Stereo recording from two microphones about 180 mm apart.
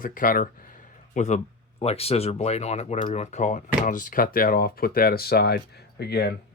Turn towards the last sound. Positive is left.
turn(degrees=65)  # may be behind; listen again after turning